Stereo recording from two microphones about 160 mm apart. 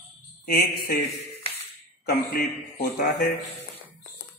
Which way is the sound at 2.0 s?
70° left (ahead or behind).